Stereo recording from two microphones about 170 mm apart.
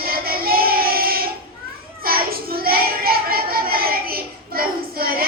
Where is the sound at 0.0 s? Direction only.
60° right (ahead or behind).